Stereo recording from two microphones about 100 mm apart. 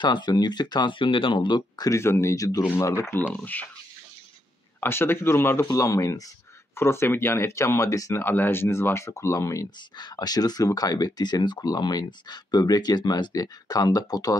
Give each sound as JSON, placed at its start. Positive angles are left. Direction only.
{"t": 0.0, "sound": "speech", "side_deg": 50}
{"t": 1.9, "sound": "speech", "side_deg": 30}
{"t": 2.6, "sound": "speech", "side_deg": 25}
{"t": 4.7, "sound": "speech", "side_deg": 25}
{"t": 5.7, "sound": "speech", "side_deg": 35}
{"t": 8.2, "sound": "speech", "side_deg": 20}
{"t": 9.9, "sound": "speech", "side_deg": 45}